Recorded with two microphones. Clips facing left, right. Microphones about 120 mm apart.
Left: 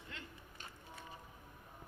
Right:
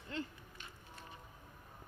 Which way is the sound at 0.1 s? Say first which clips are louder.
Right 12 dB; 35° right (ahead or behind).